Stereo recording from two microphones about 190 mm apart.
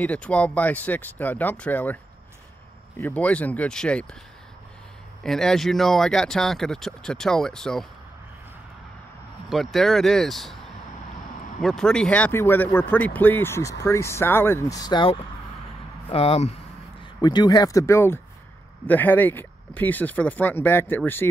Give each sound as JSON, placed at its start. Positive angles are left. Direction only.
{"t": 0.0, "sound": "speech", "side_deg": 5}
{"t": 3.0, "sound": "speech", "side_deg": 10}
{"t": 5.2, "sound": "speech", "side_deg": 0}
{"t": 9.5, "sound": "speech", "side_deg": 0}
{"t": 11.6, "sound": "speech", "side_deg": 5}
{"t": 17.2, "sound": "speech", "side_deg": 20}